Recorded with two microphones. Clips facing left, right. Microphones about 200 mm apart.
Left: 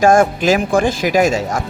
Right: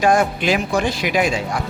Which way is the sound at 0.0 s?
45° left (ahead or behind).